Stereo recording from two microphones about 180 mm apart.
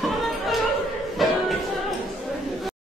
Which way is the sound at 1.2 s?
Centre (ahead or behind).